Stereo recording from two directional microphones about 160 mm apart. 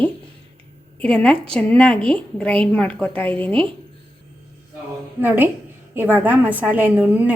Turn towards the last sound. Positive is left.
turn(degrees=-10)  # may be behind; listen again after turning